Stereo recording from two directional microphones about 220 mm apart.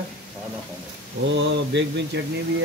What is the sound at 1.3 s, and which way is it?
Speech, 55° right (ahead or behind).